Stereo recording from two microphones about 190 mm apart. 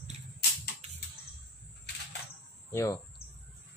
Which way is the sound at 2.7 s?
15° left (ahead or behind).